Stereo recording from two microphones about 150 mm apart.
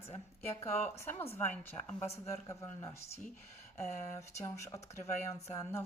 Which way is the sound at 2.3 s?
20° left (ahead or behind).